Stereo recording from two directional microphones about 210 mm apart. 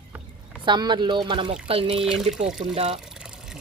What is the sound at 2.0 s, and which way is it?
Speech, centre (ahead or behind).